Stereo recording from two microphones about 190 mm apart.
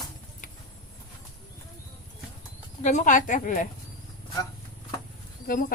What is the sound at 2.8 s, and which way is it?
Speech, 40° left (ahead or behind).